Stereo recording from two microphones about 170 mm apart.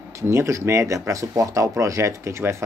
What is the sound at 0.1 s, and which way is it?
Speech, 15° right (ahead or behind).